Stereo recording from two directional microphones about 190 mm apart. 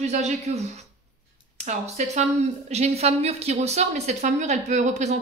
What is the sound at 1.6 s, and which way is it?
Speech, 35° right (ahead or behind).